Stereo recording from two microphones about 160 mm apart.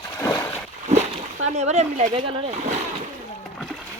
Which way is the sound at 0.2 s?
15° left (ahead or behind).